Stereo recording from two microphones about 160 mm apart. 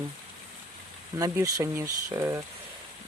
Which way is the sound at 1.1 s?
20° right (ahead or behind).